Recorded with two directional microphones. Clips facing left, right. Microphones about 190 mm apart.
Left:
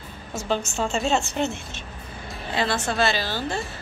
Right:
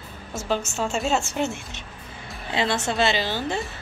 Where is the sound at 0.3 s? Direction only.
5° right (ahead or behind).